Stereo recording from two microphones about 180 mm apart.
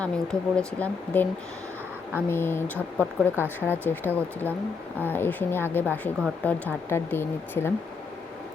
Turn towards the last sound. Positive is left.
turn(degrees=10)  # may be behind; listen again after turning